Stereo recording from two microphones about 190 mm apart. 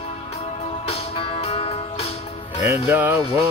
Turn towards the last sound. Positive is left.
turn(degrees=-10)  # may be behind; listen again after turning